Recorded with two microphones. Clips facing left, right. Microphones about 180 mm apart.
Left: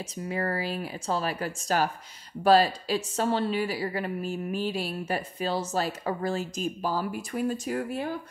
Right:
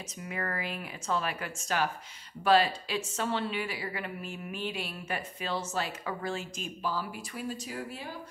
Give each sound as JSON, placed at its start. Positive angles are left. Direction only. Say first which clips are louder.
{"t": 0.3, "sound": "a woman's voice", "louder": "left 6 dB", "side_deg": 35}